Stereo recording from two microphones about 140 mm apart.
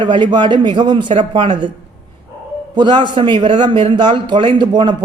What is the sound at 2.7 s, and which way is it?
A man's voice, 35° right (ahead or behind).